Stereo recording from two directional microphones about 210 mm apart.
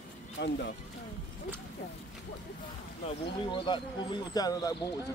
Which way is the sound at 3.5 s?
20° left (ahead or behind).